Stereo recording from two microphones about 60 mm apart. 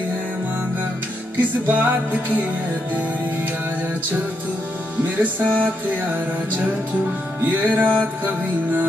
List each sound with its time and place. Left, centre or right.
1.7 s music: right
5.0 s music: right
7.4 s music: right